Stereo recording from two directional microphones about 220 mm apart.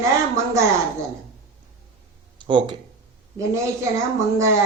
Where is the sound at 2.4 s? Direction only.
20° right (ahead or behind).